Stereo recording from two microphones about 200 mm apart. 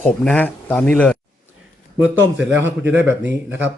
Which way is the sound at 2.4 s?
10° right (ahead or behind).